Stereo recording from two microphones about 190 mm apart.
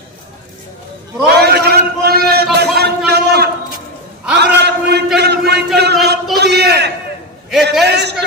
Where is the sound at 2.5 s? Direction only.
60° right (ahead or behind).